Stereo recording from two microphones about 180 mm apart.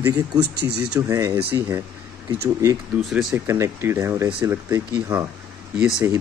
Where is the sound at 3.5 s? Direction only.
15° right (ahead or behind).